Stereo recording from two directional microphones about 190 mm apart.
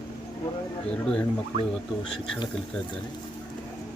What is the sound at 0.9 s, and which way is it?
Speech, 5° left (ahead or behind).